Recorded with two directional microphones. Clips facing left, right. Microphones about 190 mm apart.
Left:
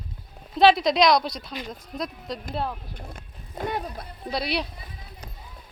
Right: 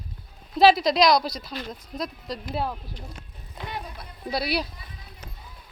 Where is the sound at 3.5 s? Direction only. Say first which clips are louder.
Left 6 dB; 45° left (ahead or behind).